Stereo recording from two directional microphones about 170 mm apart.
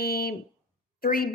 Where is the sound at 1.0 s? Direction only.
60° left (ahead or behind).